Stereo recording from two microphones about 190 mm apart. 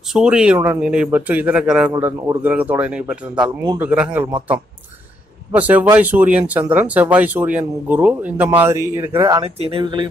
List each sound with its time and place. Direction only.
0.1 s speech: 5° right (ahead or behind)
3.4 s speech: 20° right (ahead or behind)
3.8 s speech: 10° right (ahead or behind)
5.6 s speech: 10° right (ahead or behind)
9.4 s speech: 30° right (ahead or behind)